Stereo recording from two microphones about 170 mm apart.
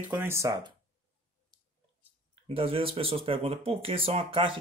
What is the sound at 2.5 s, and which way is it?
Speech, 35° right (ahead or behind).